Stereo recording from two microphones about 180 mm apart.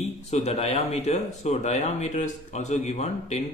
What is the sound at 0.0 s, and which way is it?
Speech, 35° left (ahead or behind).